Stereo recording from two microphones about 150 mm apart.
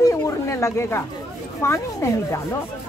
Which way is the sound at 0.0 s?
20° left (ahead or behind).